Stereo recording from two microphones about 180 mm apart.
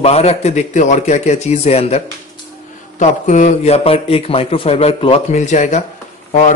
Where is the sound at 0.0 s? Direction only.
35° left (ahead or behind).